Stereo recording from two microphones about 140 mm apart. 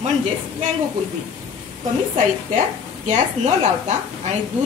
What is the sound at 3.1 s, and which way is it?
Speech, 55° right (ahead or behind).